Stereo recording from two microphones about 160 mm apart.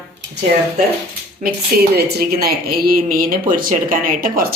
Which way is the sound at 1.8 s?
80° right.